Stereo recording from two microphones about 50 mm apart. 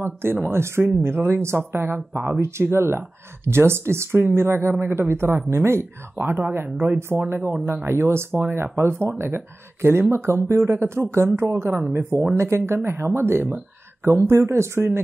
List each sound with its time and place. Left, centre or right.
0.0 s speech: right
0.8 s speech: right
8.7 s speech: right
12.4 s speech: right